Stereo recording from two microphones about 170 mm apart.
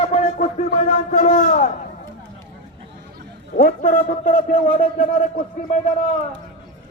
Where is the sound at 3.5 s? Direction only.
55° left (ahead or behind).